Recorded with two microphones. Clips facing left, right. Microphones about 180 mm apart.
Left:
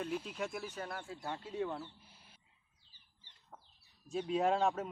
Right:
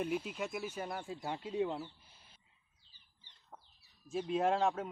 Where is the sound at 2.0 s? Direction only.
10° left (ahead or behind).